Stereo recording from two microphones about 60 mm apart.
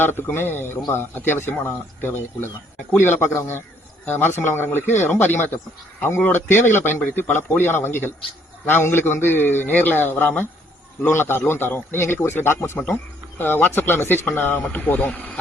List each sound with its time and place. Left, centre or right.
0.0 s speech: left